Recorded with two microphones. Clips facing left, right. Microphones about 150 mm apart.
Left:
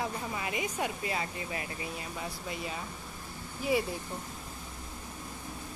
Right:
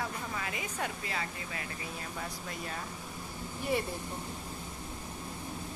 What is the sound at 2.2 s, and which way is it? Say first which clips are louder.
Speech: left 3 dB; 10° left (ahead or behind).